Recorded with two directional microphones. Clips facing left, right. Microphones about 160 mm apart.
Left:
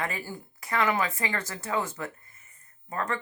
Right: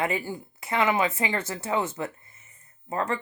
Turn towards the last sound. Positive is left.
turn(degrees=-25)  # may be behind; listen again after turning